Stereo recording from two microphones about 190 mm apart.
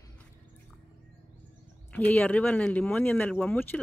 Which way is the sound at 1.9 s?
10° left (ahead or behind).